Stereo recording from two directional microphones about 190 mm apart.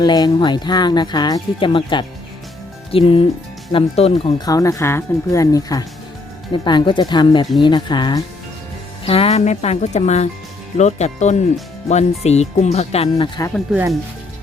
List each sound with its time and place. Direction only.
0.0 s speech: 20° left (ahead or behind)